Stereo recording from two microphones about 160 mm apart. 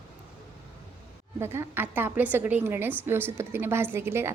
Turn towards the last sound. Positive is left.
turn(degrees=-15)  # may be behind; listen again after turning